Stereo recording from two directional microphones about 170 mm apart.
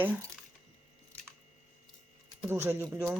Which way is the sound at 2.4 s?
15° right (ahead or behind).